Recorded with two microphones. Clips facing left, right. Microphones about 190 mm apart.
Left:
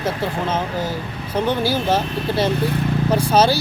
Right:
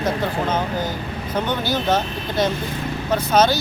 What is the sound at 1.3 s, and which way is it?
Speech, 30° left (ahead or behind).